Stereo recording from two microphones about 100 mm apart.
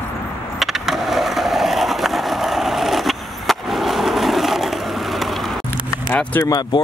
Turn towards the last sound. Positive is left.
turn(degrees=45)  # may be behind; listen again after turning